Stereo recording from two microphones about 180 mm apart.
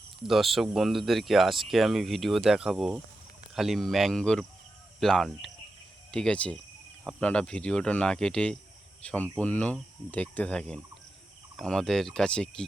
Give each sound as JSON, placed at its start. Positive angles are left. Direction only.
{"t": 0.3, "sound": "speech", "side_deg": 0}